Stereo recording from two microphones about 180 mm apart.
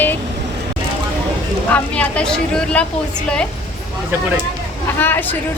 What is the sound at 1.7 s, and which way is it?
A woman's voice, 5° left (ahead or behind).